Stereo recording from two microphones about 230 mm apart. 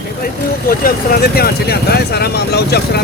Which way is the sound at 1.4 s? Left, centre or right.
Left.